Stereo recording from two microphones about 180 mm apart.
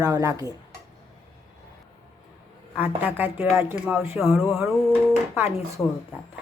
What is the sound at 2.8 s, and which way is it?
Speech, 10° right (ahead or behind).